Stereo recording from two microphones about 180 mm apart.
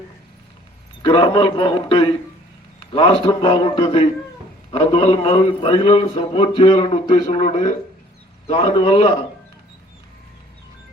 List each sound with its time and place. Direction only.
1.0 s a man's voice: 25° left (ahead or behind)